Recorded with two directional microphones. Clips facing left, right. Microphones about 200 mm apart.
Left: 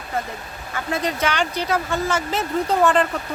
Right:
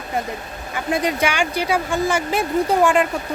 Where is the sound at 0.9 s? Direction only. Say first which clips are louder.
Right 3 dB; 15° right (ahead or behind).